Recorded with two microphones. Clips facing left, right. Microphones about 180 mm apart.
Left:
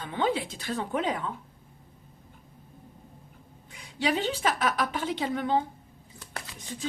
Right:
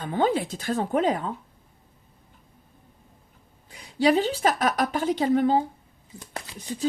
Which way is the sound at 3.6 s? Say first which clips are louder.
Right 8 dB; 40° right (ahead or behind).